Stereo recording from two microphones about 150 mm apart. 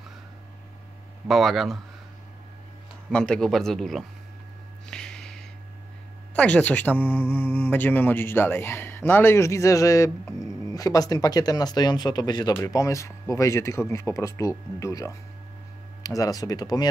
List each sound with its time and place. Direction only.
1.2 s a man's voice: centre (ahead or behind)
3.1 s a man's voice: 5° left (ahead or behind)
4.8 s a sound: 5° left (ahead or behind)
6.3 s speech: 10° left (ahead or behind)
16.2 s speech: 25° left (ahead or behind)